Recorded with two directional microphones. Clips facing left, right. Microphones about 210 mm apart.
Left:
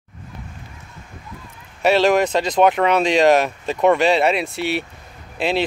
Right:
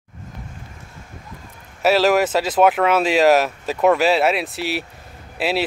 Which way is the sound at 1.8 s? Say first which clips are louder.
Even; 5° right (ahead or behind).